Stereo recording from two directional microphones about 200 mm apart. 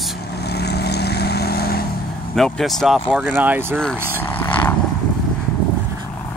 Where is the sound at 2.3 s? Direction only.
Centre (ahead or behind).